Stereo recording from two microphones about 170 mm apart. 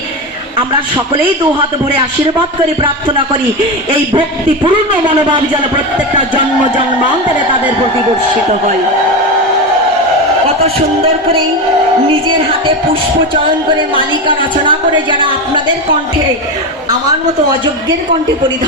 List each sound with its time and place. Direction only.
2.8 s a woman's voice: 30° right (ahead or behind)
10.6 s music: 35° right (ahead or behind)
13.9 s a woman's voice: 30° right (ahead or behind)